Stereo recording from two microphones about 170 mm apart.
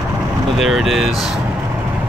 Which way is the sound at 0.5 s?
Centre (ahead or behind).